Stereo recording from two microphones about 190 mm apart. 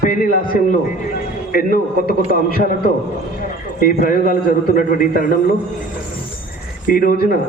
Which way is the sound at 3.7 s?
45° left (ahead or behind).